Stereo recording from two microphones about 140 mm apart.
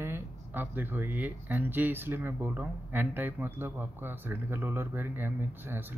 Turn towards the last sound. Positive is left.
turn(degrees=-15)  # may be behind; listen again after turning